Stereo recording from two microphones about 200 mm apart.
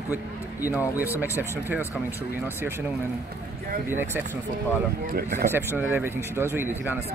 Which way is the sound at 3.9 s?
10° right (ahead or behind).